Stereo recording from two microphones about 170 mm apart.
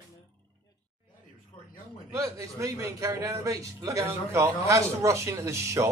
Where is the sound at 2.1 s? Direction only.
20° right (ahead or behind).